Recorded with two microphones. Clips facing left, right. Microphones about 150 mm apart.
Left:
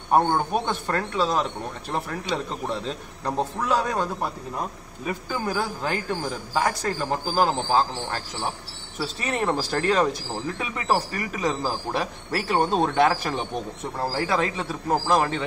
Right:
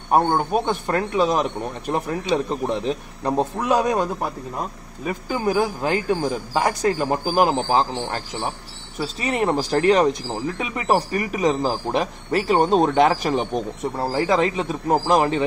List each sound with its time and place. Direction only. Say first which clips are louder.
0.7 s speech: right 4 dB; 15° right (ahead or behind)
5.3 s speech: right 7 dB; 15° right (ahead or behind)